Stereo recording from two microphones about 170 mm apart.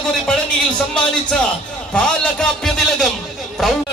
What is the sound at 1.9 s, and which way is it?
Speech, 5° left (ahead or behind).